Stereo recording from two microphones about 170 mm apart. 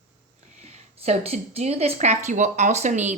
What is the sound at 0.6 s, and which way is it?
A woman's voice, 40° right (ahead or behind).